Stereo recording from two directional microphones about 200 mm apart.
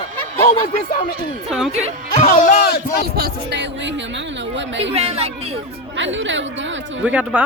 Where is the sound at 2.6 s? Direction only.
50° left (ahead or behind).